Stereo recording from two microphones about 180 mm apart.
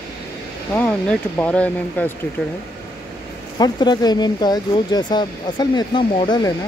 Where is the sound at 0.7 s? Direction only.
10° left (ahead or behind).